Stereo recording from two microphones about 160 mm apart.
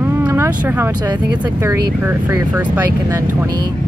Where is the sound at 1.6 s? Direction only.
15° right (ahead or behind).